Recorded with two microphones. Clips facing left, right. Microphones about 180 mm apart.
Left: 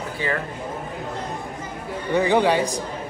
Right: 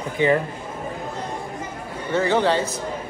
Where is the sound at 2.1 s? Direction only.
15° left (ahead or behind).